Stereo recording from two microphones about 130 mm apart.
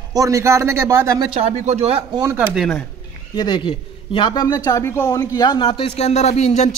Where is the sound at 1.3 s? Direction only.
55° right (ahead or behind).